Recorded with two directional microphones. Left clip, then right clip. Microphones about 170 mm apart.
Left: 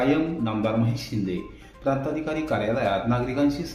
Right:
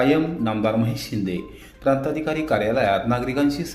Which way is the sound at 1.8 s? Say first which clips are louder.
Right 5 dB; 15° right (ahead or behind).